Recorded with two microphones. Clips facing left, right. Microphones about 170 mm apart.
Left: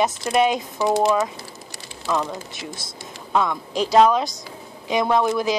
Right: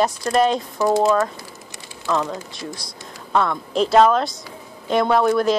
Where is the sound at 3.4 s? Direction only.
Centre (ahead or behind).